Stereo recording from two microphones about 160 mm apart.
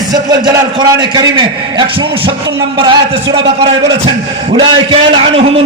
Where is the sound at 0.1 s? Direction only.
25° right (ahead or behind).